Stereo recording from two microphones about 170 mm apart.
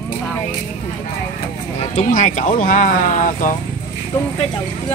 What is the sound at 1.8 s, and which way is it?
Speech, 45° left (ahead or behind).